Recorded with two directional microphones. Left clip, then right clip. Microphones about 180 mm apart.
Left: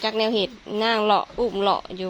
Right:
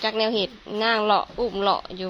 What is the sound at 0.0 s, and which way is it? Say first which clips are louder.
Speech: left 1 dB; 15° left (ahead or behind).